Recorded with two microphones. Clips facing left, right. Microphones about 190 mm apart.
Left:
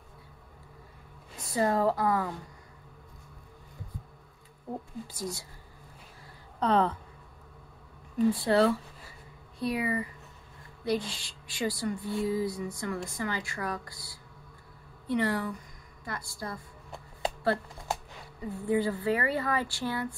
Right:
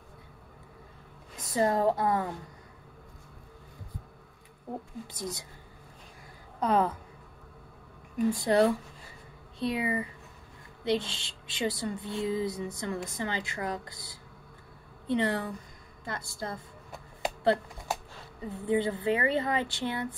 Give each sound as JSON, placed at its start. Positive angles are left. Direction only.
{"t": 1.5, "sound": "speech", "side_deg": -20}
{"t": 5.0, "sound": "speech", "side_deg": -20}
{"t": 6.6, "sound": "a woman's voice", "side_deg": -10}
{"t": 8.5, "sound": "speech", "side_deg": -20}
{"t": 17.4, "sound": "a sound", "side_deg": -20}
{"t": 18.5, "sound": "speech", "side_deg": -20}